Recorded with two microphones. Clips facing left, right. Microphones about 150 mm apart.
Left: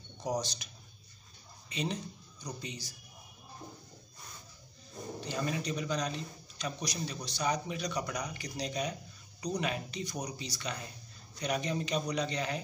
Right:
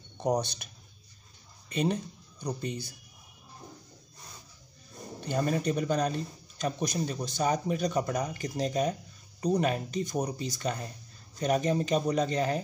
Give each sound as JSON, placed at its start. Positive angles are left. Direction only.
{"t": 0.2, "sound": "speech", "side_deg": -60}
{"t": 1.7, "sound": "speech", "side_deg": -50}
{"t": 5.2, "sound": "speech", "side_deg": -50}